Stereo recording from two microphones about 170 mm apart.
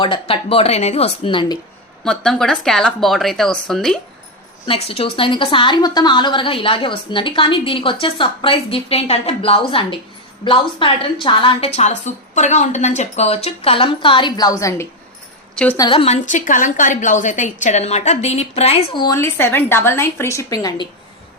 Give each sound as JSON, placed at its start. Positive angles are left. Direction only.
{"t": 0.0, "sound": "a woman's voice", "side_deg": 30}
{"t": 2.0, "sound": "speech", "side_deg": 5}
{"t": 4.6, "sound": "a woman's voice", "side_deg": 35}
{"t": 15.8, "sound": "a woman's voice", "side_deg": 30}
{"t": 19.0, "sound": "a woman's voice", "side_deg": 15}